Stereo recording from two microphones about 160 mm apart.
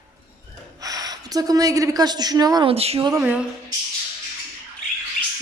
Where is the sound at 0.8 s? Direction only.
20° right (ahead or behind).